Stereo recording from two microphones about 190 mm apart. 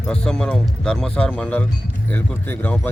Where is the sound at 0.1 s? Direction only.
5° left (ahead or behind).